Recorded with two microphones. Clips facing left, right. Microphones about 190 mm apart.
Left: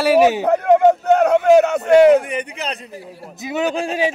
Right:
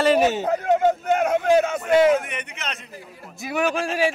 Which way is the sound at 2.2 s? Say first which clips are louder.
Left 8 dB; 35° left (ahead or behind).